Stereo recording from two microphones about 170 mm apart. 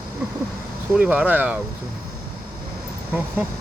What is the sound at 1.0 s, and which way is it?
Speech, 10° right (ahead or behind).